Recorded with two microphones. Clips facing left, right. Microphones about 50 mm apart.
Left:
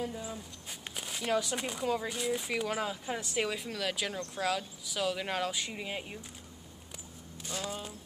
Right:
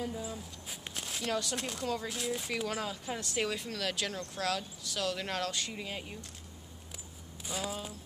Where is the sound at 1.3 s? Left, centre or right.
Centre.